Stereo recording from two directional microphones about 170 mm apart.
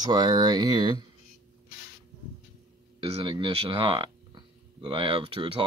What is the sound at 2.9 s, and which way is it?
Speech, 30° right (ahead or behind).